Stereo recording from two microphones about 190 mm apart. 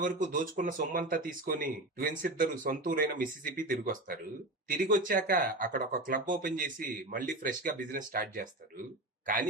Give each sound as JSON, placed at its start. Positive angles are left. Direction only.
{"t": 0.0, "sound": "speech", "side_deg": -45}